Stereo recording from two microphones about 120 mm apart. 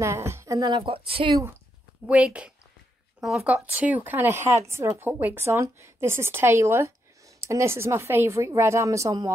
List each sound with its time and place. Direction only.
0.0 s a woman's voice: 25° right (ahead or behind)
0.7 s speech: 50° right (ahead or behind)
2.0 s a woman's voice: 10° right (ahead or behind); by 9.3 s 30° right (ahead or behind)